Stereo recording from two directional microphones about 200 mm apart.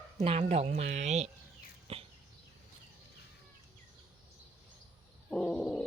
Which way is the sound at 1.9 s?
30° right (ahead or behind).